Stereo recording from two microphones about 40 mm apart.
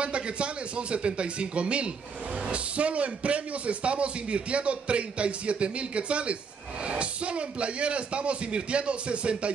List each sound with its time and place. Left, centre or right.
0.0 s a man's voice: right